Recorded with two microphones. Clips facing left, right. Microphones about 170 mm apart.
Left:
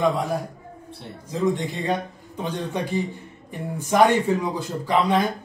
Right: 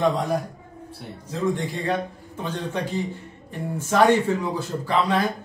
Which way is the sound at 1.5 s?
20° left (ahead or behind).